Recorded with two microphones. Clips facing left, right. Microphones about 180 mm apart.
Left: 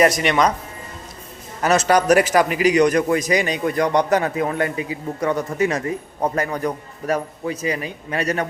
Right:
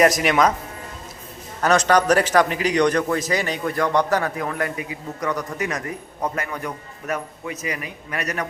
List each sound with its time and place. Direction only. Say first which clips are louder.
0.0 s speech: even; centre (ahead or behind)
1.6 s a man's voice: left 1 dB; 5° left (ahead or behind); by 8.4 s 30° left (ahead or behind)